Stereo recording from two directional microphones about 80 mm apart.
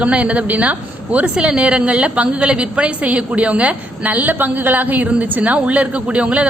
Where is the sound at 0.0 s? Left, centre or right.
Centre.